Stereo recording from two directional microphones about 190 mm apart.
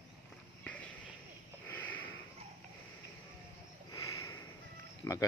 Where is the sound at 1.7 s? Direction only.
10° left (ahead or behind).